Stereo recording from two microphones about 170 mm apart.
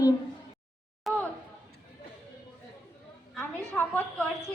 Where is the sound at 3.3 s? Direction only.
5° left (ahead or behind).